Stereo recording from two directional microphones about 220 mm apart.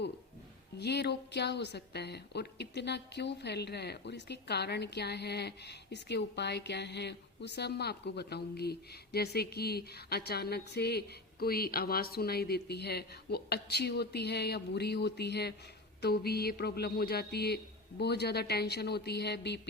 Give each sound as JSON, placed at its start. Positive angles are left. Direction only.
{"t": 0.8, "sound": "a woman's voice", "side_deg": 50}